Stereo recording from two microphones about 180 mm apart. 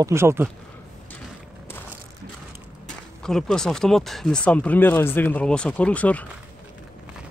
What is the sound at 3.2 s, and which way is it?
Speech, 5° left (ahead or behind).